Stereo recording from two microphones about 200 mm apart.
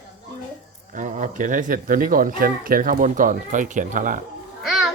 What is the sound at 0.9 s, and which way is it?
Speech, 40° right (ahead or behind).